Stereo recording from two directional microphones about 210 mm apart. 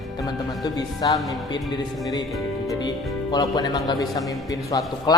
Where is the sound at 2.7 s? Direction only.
20° left (ahead or behind).